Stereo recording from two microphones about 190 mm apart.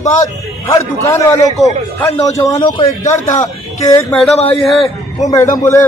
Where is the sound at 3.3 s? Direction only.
40° left (ahead or behind).